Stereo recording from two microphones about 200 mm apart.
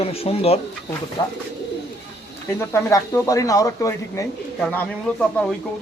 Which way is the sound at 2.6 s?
15° left (ahead or behind).